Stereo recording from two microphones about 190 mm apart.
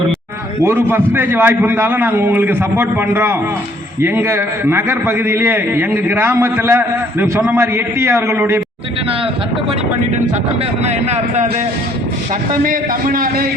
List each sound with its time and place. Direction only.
0.6 s a man's voice: 15° right (ahead or behind)
10.8 s a man's voice: 35° right (ahead or behind)
12.6 s a man's voice: 45° right (ahead or behind)